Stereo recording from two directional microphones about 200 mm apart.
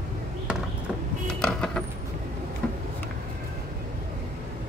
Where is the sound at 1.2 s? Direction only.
5° left (ahead or behind).